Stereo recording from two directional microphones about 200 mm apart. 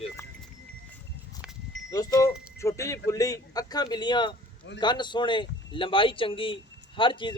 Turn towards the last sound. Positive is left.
turn(degrees=25)  # may be behind; listen again after turning